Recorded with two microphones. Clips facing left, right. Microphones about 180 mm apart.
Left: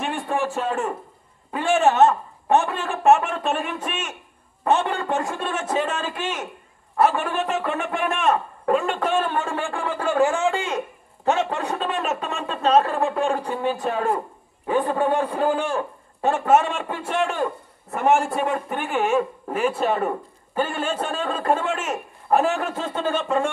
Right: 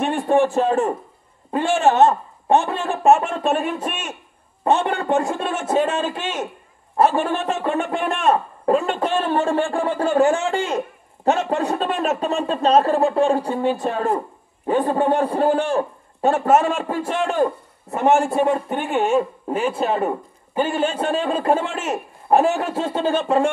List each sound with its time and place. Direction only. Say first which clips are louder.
0.0 s speech: right 7 dB; 35° right (ahead or behind)
17.9 s a man's voice: right 3 dB; 25° right (ahead or behind)
21.2 s speech: right 3 dB; 30° right (ahead or behind)